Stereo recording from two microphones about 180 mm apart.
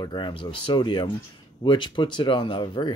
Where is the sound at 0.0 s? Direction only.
25° left (ahead or behind).